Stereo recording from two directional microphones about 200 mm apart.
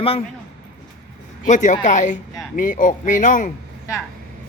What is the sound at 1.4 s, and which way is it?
Speech, 40° left (ahead or behind).